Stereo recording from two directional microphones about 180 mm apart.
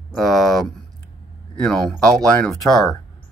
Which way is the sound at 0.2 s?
Centre (ahead or behind).